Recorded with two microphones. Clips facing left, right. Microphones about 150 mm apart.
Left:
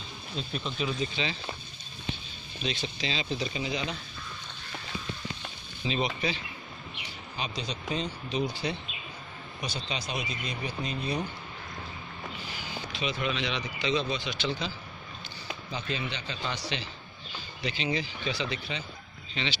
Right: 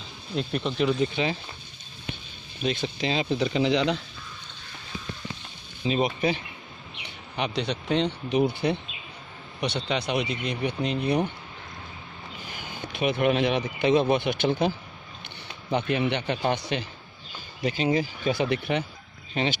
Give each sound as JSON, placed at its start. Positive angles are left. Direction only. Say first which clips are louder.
{"t": 0.4, "sound": "speech", "louder": "right 7 dB", "side_deg": -70}
{"t": 2.6, "sound": "speech", "louder": "right 6 dB", "side_deg": -50}
{"t": 5.9, "sound": "speech", "louder": "right 6 dB", "side_deg": -50}
{"t": 7.3, "sound": "speech", "louder": "right 8 dB", "side_deg": -65}
{"t": 12.4, "sound": "speech", "louder": "right 1 dB", "side_deg": -50}
{"t": 19.3, "sound": "speech", "louder": "right 8 dB", "side_deg": -50}